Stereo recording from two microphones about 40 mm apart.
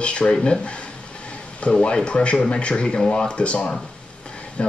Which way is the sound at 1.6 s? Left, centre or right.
Left.